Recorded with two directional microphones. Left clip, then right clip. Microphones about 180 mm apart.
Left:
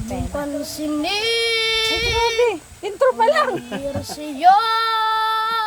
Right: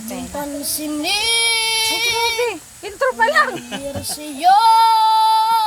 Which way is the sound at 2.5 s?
15° left (ahead or behind).